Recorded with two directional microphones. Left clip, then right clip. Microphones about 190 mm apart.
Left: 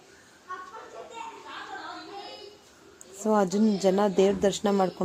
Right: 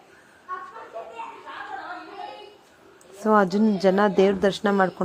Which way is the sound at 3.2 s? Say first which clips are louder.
Right 5 dB; 10° right (ahead or behind).